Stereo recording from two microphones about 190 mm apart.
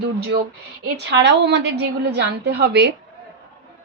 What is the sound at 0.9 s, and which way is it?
A woman's voice, 65° right (ahead or behind).